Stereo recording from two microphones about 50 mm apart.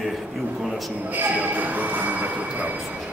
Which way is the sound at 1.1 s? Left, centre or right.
Right.